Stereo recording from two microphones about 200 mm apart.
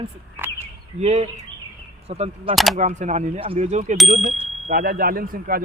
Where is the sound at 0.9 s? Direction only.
35° right (ahead or behind).